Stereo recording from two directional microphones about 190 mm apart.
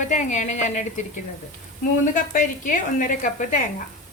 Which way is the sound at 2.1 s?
45° left (ahead or behind).